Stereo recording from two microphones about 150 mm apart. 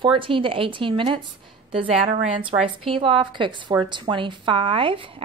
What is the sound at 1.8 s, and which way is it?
Speech, 50° right (ahead or behind).